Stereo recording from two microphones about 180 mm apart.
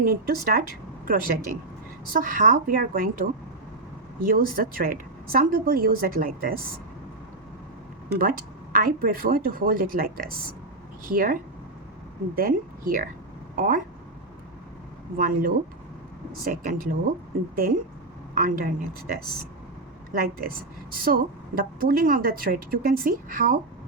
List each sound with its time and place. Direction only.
0.0 s a woman's voice: 55° right (ahead or behind)
4.3 s a woman's voice: 55° right (ahead or behind)
8.7 s a woman's voice: 55° right (ahead or behind)
12.4 s a woman's voice: 55° right (ahead or behind)
15.2 s a woman's voice: 50° right (ahead or behind)
20.1 s a woman's voice: 55° right (ahead or behind)